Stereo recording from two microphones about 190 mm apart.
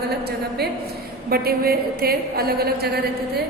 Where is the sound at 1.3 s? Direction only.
55° right (ahead or behind).